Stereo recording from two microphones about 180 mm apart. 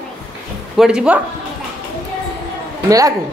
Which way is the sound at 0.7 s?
5° right (ahead or behind).